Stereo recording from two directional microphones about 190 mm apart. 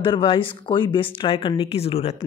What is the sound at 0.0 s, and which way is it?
Speech, 25° left (ahead or behind).